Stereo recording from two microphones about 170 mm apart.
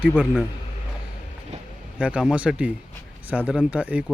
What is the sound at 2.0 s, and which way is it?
Speech, 5° right (ahead or behind).